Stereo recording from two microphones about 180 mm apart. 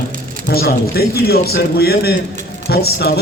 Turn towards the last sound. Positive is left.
turn(degrees=60)  # may be behind; listen again after turning